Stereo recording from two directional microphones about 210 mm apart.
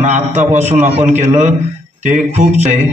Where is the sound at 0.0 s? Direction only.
35° right (ahead or behind).